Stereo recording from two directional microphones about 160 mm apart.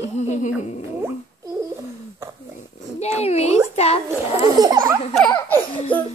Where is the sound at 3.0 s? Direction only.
40° left (ahead or behind).